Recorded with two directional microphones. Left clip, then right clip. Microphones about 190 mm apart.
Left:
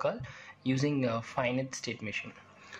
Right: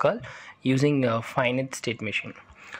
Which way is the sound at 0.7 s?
35° right (ahead or behind).